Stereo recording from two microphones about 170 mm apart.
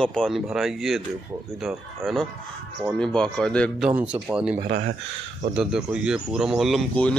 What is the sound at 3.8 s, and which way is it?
Speech, 10° right (ahead or behind).